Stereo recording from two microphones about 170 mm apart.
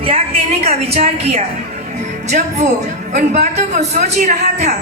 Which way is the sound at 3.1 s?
45° right (ahead or behind).